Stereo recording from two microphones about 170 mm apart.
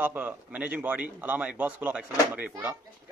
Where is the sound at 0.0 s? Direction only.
10° right (ahead or behind).